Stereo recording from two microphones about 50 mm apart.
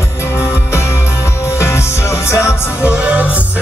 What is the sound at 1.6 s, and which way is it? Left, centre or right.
Music, left.